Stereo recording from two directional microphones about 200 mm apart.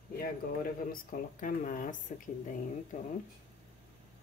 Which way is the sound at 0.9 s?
45° left (ahead or behind).